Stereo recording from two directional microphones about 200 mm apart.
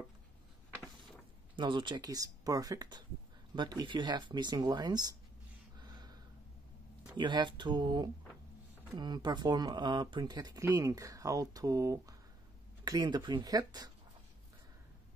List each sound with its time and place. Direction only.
1.6 s speech: 25° right (ahead or behind)
5.8 s a sound: 20° right (ahead or behind)
7.2 s speech: 25° right (ahead or behind)